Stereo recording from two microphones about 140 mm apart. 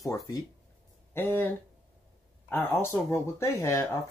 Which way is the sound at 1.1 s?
15° left (ahead or behind).